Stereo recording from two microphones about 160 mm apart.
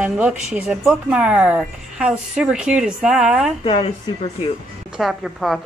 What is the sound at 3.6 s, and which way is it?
Speech, 30° left (ahead or behind).